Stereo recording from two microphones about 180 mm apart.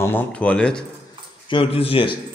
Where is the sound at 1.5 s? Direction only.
30° left (ahead or behind).